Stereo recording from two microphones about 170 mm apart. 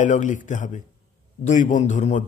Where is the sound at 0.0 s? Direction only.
45° left (ahead or behind).